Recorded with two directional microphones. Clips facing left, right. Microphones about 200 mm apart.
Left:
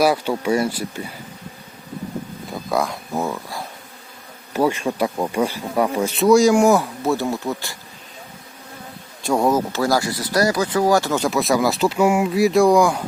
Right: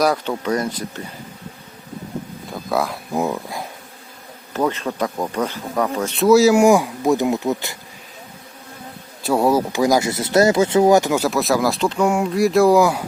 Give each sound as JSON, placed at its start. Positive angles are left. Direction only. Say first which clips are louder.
{"t": 0.0, "sound": "speech", "louder": "left 1 dB", "side_deg": 5}
{"t": 2.5, "sound": "wild animals", "louder": "even", "side_deg": 0}
{"t": 3.2, "sound": "speech", "louder": "right 3 dB", "side_deg": -20}
{"t": 4.5, "sound": "speech", "louder": "left 2 dB", "side_deg": 10}
{"t": 6.2, "sound": "speech", "louder": "right 1 dB", "side_deg": -5}
{"t": 9.2, "sound": "speech", "louder": "right 1 dB", "side_deg": -5}
{"t": 11.1, "sound": "speech", "louder": "right 1 dB", "side_deg": -5}